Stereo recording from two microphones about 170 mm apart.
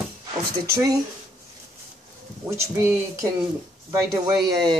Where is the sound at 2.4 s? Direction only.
15° right (ahead or behind).